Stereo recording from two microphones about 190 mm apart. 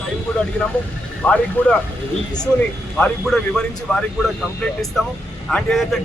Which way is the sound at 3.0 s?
5° left (ahead or behind).